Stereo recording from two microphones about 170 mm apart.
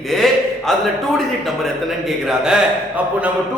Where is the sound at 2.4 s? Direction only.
5° right (ahead or behind).